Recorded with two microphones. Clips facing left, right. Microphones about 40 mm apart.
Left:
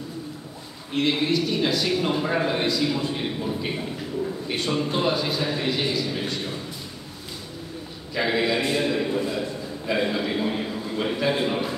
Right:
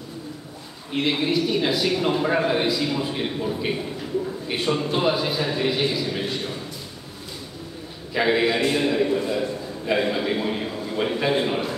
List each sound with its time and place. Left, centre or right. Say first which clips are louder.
0.9 s a man's voice: even; centre
8.1 s a man's voice: right 3 dB; centre